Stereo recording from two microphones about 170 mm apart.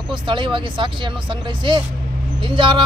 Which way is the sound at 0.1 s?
30° right (ahead or behind).